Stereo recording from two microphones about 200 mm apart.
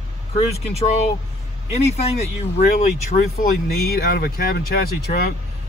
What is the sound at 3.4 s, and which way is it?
Speech, 50° left (ahead or behind).